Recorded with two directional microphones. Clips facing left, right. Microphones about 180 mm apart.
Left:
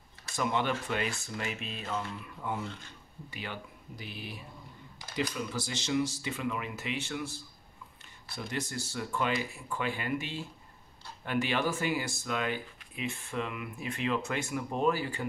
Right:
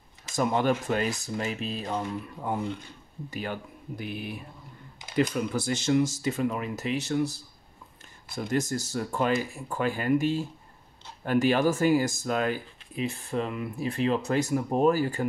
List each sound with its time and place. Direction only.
0.4 s speech: 45° right (ahead or behind)